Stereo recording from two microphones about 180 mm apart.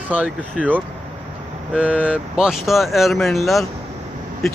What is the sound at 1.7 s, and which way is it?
Speech, 5° right (ahead or behind).